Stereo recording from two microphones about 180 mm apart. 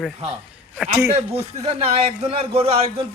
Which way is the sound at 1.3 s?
30° right (ahead or behind).